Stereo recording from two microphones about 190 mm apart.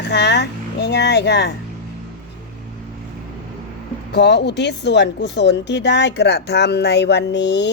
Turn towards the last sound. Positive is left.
turn(degrees=65)  # may be behind; listen again after turning